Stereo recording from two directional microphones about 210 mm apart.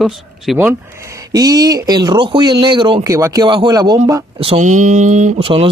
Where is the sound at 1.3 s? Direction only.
20° right (ahead or behind).